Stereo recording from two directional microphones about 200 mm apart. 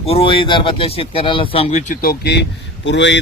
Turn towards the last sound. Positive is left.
turn(degrees=65)  # may be behind; listen again after turning